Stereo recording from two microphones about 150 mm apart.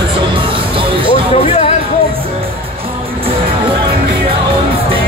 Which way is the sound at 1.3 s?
40° left (ahead or behind).